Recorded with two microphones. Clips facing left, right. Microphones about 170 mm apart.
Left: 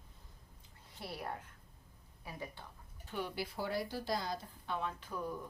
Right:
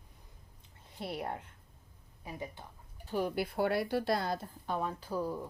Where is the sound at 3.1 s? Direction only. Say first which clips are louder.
Right 8 dB; 40° right (ahead or behind).